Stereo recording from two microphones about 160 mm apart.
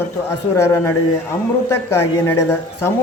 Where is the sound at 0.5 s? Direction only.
20° left (ahead or behind).